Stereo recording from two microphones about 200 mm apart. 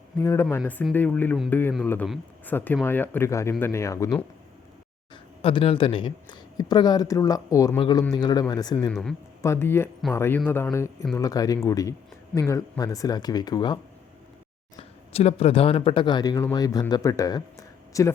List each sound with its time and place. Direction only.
0.2 s speech: 15° left (ahead or behind)
5.4 s speech: 30° left (ahead or behind)
8.9 s a man's voice: 5° left (ahead or behind); by 13.7 s 20° left (ahead or behind)
14.8 s speech: 30° left (ahead or behind); by 18.1 s 15° left (ahead or behind)